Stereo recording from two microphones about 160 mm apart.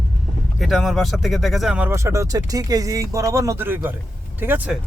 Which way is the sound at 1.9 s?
20° right (ahead or behind).